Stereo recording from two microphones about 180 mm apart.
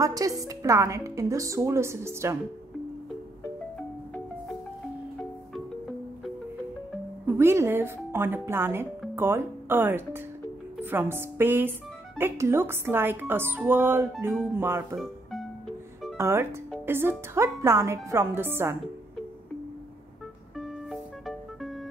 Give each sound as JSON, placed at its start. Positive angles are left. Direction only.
{"t": 0.0, "sound": "a woman's voice", "side_deg": -20}
{"t": 7.3, "sound": "a woman's voice", "side_deg": -15}
{"t": 16.2, "sound": "a woman's voice", "side_deg": -15}
{"t": 20.5, "sound": "music", "side_deg": 0}